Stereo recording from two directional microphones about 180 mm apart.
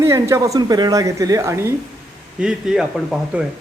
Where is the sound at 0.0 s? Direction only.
15° right (ahead or behind).